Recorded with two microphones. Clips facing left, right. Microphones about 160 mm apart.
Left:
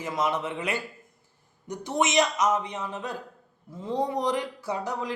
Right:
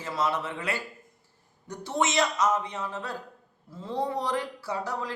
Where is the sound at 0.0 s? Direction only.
15° left (ahead or behind).